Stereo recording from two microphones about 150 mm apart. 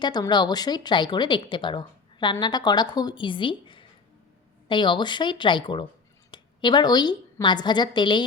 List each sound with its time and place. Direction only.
0.0 s a woman's voice: 30° left (ahead or behind)